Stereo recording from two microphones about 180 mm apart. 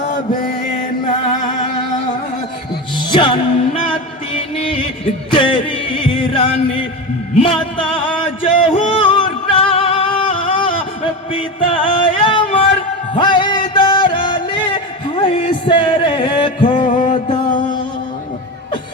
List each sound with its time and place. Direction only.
3.1 s music: 25° left (ahead or behind)
5.3 s music: 30° left (ahead or behind)
16.7 s music: 45° left (ahead or behind)